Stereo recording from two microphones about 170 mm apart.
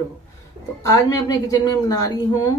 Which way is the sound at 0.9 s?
20° left (ahead or behind).